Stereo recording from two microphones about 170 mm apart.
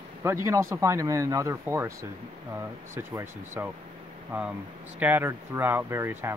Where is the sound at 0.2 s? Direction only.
15° right (ahead or behind).